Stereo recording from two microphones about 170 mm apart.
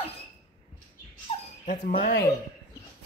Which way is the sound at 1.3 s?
35° left (ahead or behind).